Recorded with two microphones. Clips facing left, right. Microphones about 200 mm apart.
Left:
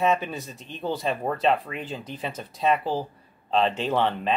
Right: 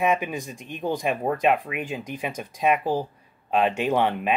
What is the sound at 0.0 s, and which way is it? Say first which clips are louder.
Speech: even; 15° right (ahead or behind).